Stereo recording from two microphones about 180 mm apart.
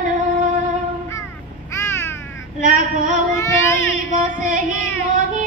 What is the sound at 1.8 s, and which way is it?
Crow, 15° left (ahead or behind).